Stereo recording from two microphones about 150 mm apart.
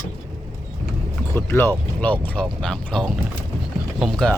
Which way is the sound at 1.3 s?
15° left (ahead or behind).